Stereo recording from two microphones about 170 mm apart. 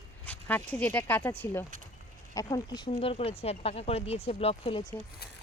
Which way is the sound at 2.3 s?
20° left (ahead or behind).